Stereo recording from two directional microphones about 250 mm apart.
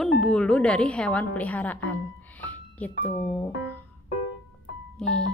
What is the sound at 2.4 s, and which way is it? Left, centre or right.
Music, centre.